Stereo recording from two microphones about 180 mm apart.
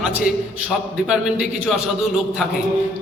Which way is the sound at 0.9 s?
5° right (ahead or behind).